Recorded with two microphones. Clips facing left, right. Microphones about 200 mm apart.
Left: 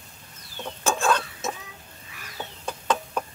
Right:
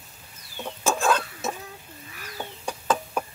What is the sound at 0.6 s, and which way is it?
Chicken, 5° right (ahead or behind).